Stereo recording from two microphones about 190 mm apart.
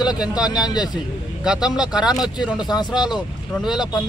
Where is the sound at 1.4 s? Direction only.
5° right (ahead or behind).